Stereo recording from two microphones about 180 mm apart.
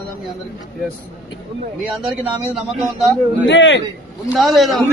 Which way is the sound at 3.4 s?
90° left.